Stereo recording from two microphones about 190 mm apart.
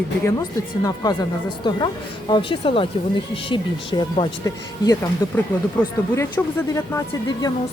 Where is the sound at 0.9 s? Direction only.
20° left (ahead or behind).